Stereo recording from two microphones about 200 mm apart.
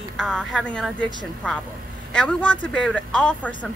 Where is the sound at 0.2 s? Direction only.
Centre (ahead or behind).